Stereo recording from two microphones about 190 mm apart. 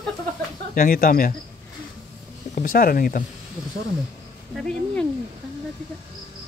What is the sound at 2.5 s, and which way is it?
Speech, 45° left (ahead or behind).